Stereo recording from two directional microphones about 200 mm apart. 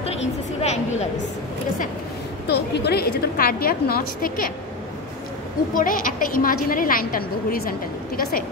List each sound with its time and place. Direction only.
0.6 s a woman's voice: 35° left (ahead or behind)
2.5 s a woman's voice: 55° left (ahead or behind)
5.8 s a woman's voice: 45° left (ahead or behind)